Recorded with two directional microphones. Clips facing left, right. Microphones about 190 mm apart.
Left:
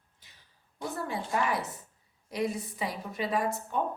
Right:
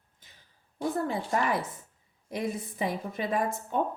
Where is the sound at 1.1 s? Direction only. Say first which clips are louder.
Right 2 dB; 55° right (ahead or behind).